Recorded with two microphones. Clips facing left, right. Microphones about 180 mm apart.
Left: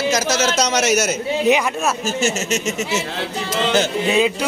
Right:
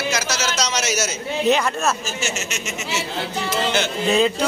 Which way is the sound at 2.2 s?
45° left (ahead or behind).